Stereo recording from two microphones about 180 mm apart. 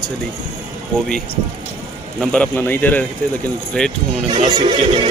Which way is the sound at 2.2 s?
5° left (ahead or behind).